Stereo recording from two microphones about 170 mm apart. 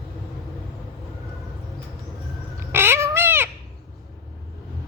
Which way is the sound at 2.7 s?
15° right (ahead or behind).